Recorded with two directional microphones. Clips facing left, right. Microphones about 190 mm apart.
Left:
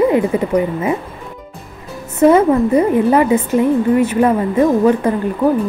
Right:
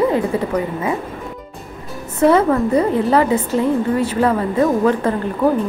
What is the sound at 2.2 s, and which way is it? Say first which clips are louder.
A woman's voice: left 3 dB; 20° left (ahead or behind).